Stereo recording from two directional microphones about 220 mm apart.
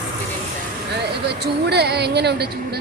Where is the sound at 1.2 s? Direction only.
50° right (ahead or behind).